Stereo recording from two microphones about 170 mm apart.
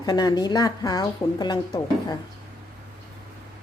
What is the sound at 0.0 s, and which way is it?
Speech, 25° left (ahead or behind).